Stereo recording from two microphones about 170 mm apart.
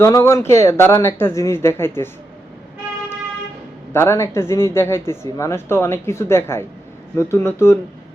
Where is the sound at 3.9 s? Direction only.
15° left (ahead or behind).